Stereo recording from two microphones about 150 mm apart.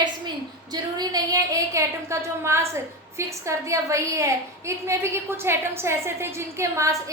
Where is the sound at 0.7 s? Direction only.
25° right (ahead or behind).